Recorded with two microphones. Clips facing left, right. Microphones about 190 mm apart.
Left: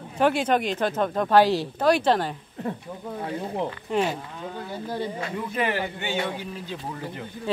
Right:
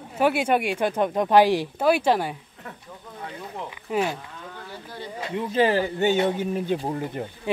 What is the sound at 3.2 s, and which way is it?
Speech, 30° left (ahead or behind).